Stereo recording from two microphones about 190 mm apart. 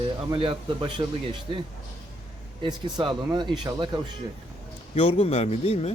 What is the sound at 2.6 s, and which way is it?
Speech, 25° right (ahead or behind).